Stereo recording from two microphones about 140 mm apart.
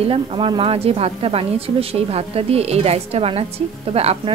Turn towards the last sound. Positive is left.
turn(degrees=-45)  # may be behind; listen again after turning